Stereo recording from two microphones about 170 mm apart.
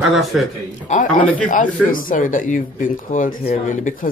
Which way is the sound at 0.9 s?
45° left (ahead or behind).